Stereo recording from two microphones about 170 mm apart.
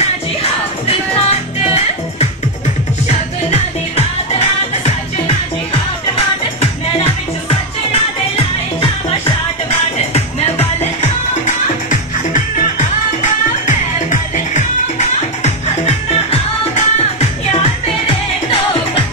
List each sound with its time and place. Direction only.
0.0 s music: 40° left (ahead or behind)
3.4 s music: 40° left (ahead or behind)
9.7 s music: 40° left (ahead or behind)